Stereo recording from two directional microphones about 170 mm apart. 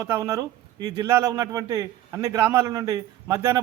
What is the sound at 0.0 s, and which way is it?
A man's voice, 20° right (ahead or behind).